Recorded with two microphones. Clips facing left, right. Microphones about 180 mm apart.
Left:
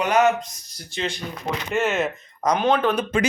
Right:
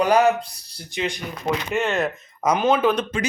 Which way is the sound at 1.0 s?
10° right (ahead or behind).